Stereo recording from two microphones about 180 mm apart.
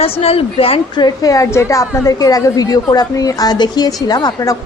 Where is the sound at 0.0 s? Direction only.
35° left (ahead or behind).